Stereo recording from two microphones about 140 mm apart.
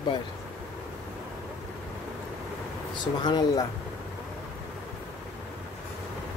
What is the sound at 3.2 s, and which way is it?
Speech, 30° left (ahead or behind).